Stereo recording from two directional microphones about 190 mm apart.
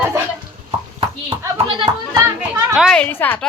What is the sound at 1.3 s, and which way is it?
Speech, 25° right (ahead or behind).